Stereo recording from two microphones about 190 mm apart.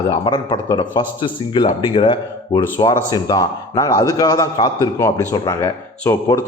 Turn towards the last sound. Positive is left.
turn(degrees=15)  # may be behind; listen again after turning